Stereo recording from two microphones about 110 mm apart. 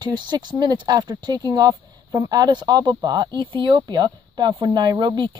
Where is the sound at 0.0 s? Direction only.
40° right (ahead or behind).